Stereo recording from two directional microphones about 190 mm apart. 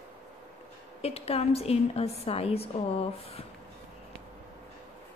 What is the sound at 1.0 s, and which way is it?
A woman's voice, 30° left (ahead or behind).